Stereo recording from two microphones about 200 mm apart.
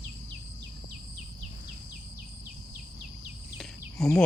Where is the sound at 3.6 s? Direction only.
Centre (ahead or behind).